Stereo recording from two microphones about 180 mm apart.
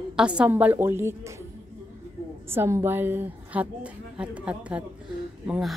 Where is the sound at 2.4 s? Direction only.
15° right (ahead or behind).